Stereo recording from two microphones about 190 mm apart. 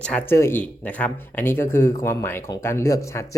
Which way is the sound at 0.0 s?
5° left (ahead or behind).